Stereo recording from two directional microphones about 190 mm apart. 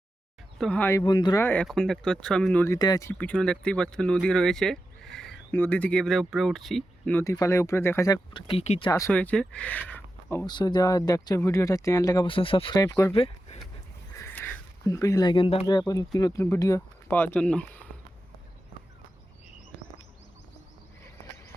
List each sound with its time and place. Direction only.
0.6 s speech: 5° left (ahead or behind)
2.7 s speech: 20° left (ahead or behind)
9.1 s speech: 5° left (ahead or behind)
13.1 s a sound: 30° left (ahead or behind)
14.2 s a sound: 10° left (ahead or behind); by 15.6 s 30° left (ahead or behind)
15.6 s speech: 20° left (ahead or behind)